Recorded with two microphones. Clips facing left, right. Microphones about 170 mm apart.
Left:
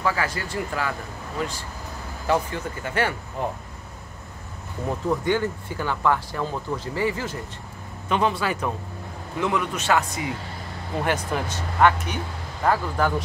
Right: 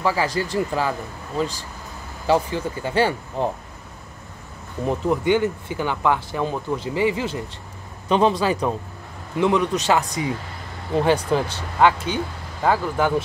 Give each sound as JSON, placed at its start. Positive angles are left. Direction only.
{"t": 0.0, "sound": "speech", "side_deg": -25}
{"t": 2.2, "sound": "speech", "side_deg": -25}
{"t": 4.8, "sound": "speech", "side_deg": -20}
{"t": 9.4, "sound": "speech", "side_deg": -30}
{"t": 9.8, "sound": "speech", "side_deg": -15}
{"t": 11.0, "sound": "speech", "side_deg": -25}
{"t": 12.6, "sound": "speech", "side_deg": -5}